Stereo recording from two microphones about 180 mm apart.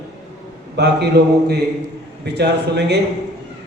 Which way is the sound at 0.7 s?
65° right (ahead or behind).